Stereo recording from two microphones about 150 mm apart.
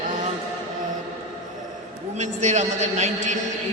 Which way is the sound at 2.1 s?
50° right (ahead or behind).